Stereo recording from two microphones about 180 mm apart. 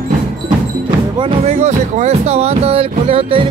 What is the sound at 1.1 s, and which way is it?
Speech, 30° right (ahead or behind).